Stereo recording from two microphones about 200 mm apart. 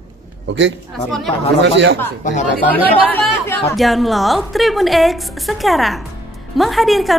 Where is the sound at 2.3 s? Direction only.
35° left (ahead or behind).